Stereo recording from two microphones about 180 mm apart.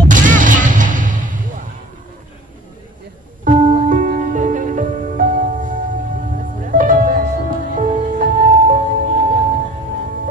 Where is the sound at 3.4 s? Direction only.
50° right (ahead or behind).